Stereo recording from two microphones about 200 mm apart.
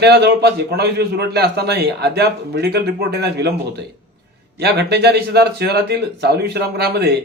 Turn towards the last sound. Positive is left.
turn(degrees=-55)  # may be behind; listen again after turning